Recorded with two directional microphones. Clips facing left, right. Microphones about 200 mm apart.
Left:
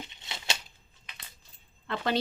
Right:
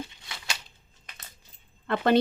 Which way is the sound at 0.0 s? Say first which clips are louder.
Right 3 dB; 20° left (ahead or behind).